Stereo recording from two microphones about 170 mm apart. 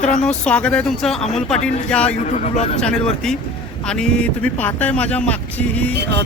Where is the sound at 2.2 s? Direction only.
40° left (ahead or behind).